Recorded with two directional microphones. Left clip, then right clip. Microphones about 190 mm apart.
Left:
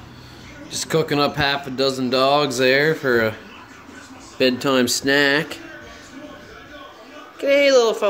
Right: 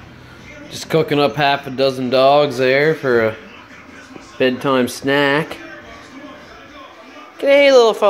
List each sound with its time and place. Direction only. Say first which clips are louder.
0.8 s speech: right 4 dB; 5° right (ahead or behind)
4.6 s speech: right 2 dB; 5° right (ahead or behind)
7.3 s speech: right 5 dB; 20° right (ahead or behind)